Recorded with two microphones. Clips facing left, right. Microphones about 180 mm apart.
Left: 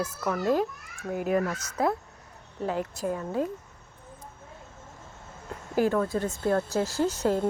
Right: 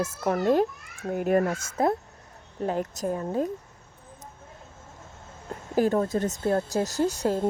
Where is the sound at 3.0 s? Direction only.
40° right (ahead or behind).